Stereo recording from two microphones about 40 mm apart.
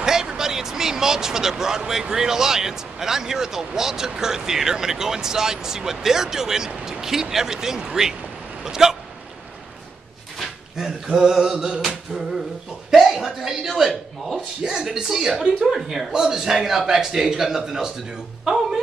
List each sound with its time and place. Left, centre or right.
0.0 s speech: centre
10.8 s a sound: centre
12.9 s a man's voice: centre